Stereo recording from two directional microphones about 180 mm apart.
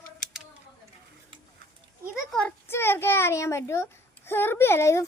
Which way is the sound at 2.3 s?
10° left (ahead or behind).